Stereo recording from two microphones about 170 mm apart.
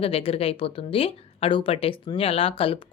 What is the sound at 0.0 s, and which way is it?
A woman's voice, 35° left (ahead or behind).